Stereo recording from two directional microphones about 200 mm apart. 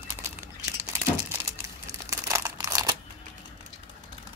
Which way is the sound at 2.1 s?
15° right (ahead or behind).